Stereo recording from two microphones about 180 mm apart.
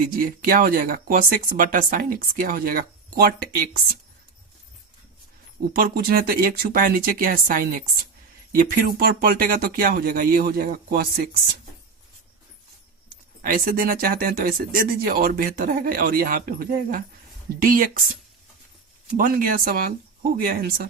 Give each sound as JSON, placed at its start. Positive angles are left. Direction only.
{"t": 0.0, "sound": "speech", "side_deg": -50}
{"t": 5.7, "sound": "speech", "side_deg": -55}
{"t": 13.1, "sound": "speech", "side_deg": -50}
{"t": 19.1, "sound": "speech", "side_deg": -50}